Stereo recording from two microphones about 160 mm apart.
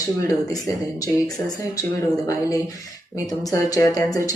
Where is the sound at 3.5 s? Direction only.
20° left (ahead or behind).